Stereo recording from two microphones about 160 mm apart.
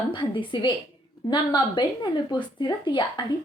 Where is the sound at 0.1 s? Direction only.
30° left (ahead or behind).